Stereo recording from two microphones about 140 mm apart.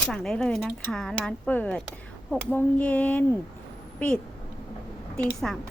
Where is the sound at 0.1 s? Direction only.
Centre (ahead or behind).